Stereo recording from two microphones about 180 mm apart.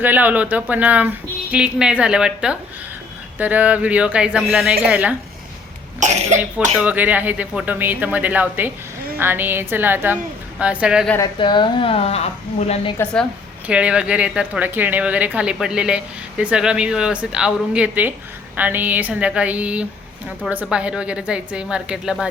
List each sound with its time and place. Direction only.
0.0 s speech: 10° right (ahead or behind)
6.0 s speech: 40° right (ahead or behind)
6.7 s a woman's voice: 10° right (ahead or behind)
11.3 s speech: 25° left (ahead or behind)
13.7 s a woman's voice: 5° right (ahead or behind)